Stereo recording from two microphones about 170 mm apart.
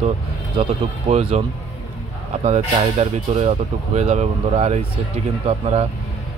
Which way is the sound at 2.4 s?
40° right (ahead or behind).